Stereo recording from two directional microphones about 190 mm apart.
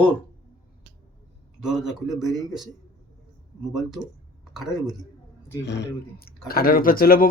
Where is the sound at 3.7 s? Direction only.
Centre (ahead or behind).